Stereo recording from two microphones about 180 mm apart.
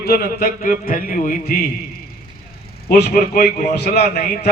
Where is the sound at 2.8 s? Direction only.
55° left (ahead or behind).